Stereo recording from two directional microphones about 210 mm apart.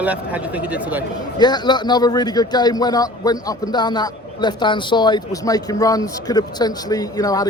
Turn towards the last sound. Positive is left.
turn(degrees=15)  # may be behind; listen again after turning